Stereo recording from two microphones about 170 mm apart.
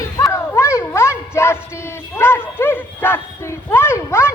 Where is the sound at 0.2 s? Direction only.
20° left (ahead or behind).